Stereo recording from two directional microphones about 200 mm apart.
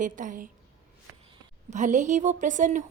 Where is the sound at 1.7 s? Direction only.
40° right (ahead or behind).